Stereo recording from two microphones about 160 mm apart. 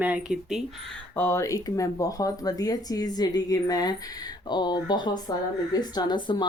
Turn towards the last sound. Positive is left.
turn(degrees=30)  # may be behind; listen again after turning